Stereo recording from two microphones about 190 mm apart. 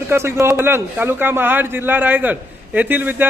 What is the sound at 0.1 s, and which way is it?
Speech, 15° right (ahead or behind).